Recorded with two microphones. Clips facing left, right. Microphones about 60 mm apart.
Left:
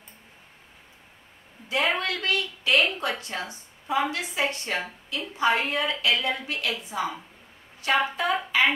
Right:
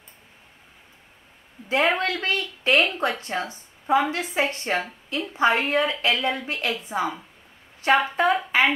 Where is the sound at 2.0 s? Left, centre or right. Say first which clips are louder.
Right 2 dB; right.